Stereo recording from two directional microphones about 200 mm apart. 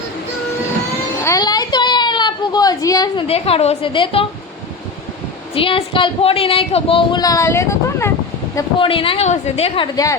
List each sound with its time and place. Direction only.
1.2 s a sound: 20° left (ahead or behind)
5.5 s speech: 25° left (ahead or behind)
8.5 s speech: 25° left (ahead or behind)